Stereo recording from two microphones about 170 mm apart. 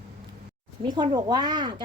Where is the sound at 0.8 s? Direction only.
25° right (ahead or behind).